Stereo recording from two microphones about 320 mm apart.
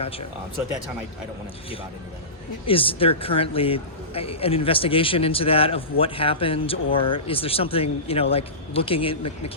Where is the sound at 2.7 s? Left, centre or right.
Centre.